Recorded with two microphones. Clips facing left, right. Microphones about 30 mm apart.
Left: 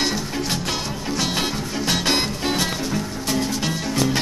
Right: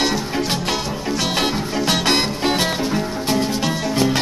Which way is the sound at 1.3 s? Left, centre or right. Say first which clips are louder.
Right 4 dB; right.